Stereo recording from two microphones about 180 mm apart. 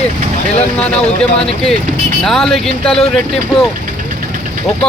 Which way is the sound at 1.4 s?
5° left (ahead or behind).